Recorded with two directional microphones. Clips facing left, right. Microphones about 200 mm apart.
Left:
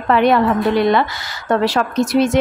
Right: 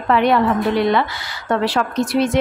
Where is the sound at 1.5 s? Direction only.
40° left (ahead or behind).